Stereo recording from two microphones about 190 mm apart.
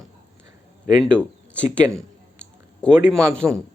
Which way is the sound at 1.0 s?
5° left (ahead or behind).